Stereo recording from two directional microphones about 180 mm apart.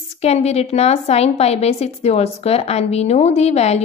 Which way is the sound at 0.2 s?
35° left (ahead or behind).